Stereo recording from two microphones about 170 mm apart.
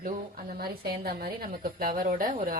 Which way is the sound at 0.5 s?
65° right (ahead or behind).